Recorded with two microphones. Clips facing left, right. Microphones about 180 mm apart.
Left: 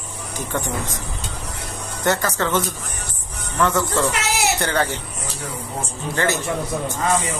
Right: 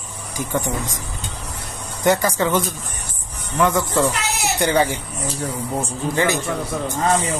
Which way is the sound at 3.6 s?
10° right (ahead or behind).